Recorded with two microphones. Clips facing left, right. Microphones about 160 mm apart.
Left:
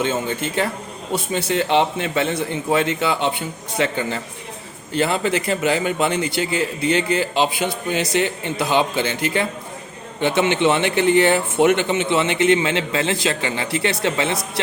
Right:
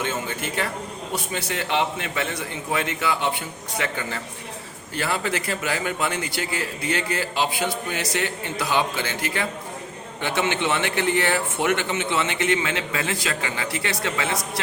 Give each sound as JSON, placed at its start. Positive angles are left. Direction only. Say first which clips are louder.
{"t": 0.0, "sound": "speech", "louder": "left 6 dB", "side_deg": 25}